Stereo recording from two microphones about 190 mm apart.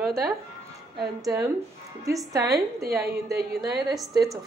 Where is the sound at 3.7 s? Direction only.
Centre (ahead or behind).